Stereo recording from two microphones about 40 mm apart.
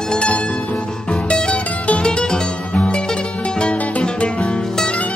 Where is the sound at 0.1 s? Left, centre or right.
Left.